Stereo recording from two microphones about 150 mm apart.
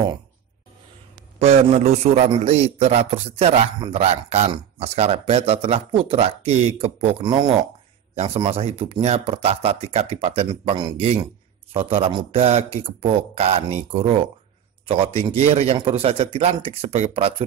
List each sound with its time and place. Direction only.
1.4 s a man's voice: 45° right (ahead or behind); by 7.5 s 30° right (ahead or behind)
8.1 s speech: 45° right (ahead or behind)
11.7 s speech: 40° right (ahead or behind)